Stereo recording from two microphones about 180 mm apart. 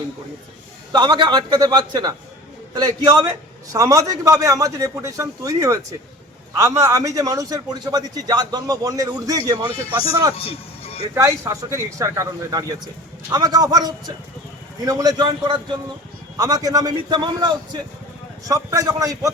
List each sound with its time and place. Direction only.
0.9 s a man's voice: 25° right (ahead or behind)
10.3 s a sound: 35° left (ahead or behind)
11.1 s a man's voice: 15° right (ahead or behind)